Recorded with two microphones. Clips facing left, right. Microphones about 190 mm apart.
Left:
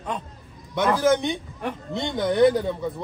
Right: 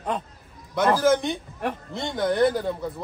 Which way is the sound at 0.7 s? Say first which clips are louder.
Even; centre (ahead or behind).